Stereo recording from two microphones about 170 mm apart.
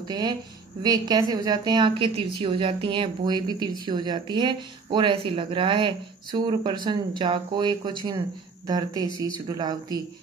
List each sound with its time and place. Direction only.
0.1 s a woman's voice: 25° right (ahead or behind)